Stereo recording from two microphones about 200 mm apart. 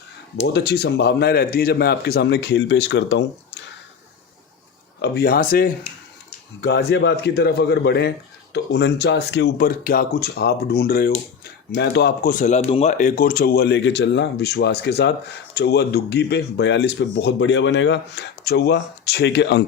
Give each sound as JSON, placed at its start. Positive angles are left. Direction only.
{"t": 0.4, "sound": "speech", "side_deg": 55}
{"t": 4.9, "sound": "speech", "side_deg": 55}
{"t": 6.6, "sound": "speech", "side_deg": 60}